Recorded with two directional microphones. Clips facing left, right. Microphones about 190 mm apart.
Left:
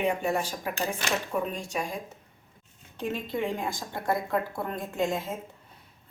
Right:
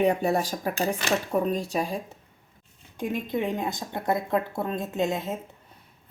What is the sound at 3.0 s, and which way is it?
Speech, 15° right (ahead or behind).